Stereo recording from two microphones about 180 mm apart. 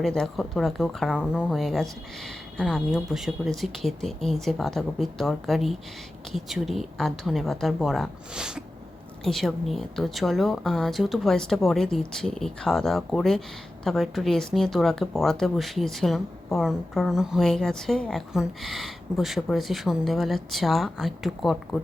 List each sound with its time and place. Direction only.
0.0 s speech: 5° left (ahead or behind)